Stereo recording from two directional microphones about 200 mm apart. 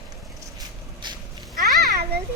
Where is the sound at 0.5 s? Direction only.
20° right (ahead or behind).